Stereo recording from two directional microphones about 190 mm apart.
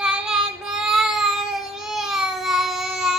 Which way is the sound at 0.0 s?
5° right (ahead or behind).